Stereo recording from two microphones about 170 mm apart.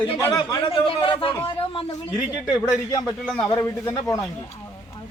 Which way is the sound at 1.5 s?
30° left (ahead or behind).